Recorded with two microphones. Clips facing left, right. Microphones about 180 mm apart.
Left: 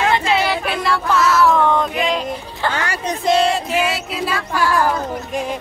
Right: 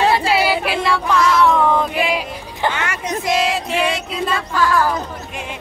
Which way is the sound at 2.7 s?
35° left (ahead or behind).